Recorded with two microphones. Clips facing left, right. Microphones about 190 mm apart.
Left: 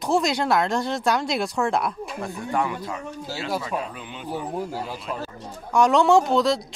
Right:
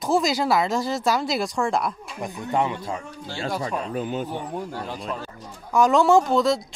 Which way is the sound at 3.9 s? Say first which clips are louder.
Right 10 dB; 40° right (ahead or behind).